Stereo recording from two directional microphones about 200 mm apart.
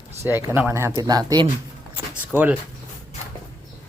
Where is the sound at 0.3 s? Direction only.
10° right (ahead or behind).